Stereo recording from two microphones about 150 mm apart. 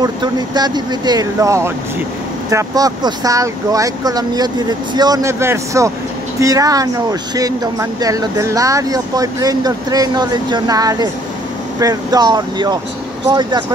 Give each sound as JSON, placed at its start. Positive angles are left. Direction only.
{"t": 0.0, "sound": "speech", "side_deg": -25}